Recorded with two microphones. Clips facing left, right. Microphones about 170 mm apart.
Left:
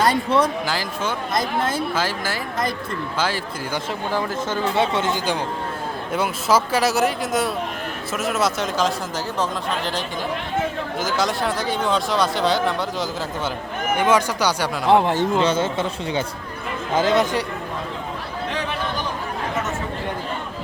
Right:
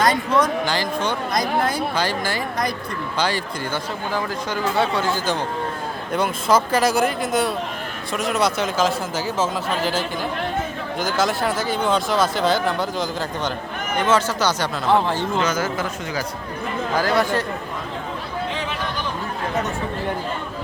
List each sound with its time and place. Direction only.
0.1 s speech: 30° left (ahead or behind)
0.6 s speech: 5° left (ahead or behind)
4.1 s speech: 20° left (ahead or behind)
6.1 s speech: 5° left (ahead or behind)
11.0 s speech: centre (ahead or behind)
14.0 s speech: 15° left (ahead or behind)
15.4 s speech: 30° left (ahead or behind)